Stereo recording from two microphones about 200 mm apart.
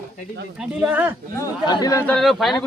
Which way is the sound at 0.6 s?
5° right (ahead or behind).